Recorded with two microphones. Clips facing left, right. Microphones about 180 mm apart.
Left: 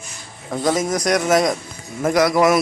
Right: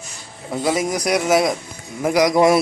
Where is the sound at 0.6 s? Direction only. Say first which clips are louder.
Left 1 dB; 5° right (ahead or behind).